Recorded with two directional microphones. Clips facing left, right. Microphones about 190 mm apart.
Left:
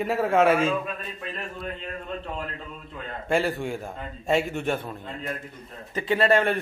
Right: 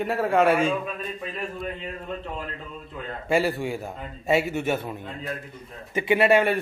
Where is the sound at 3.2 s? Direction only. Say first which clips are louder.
Right 1 dB; 5° right (ahead or behind).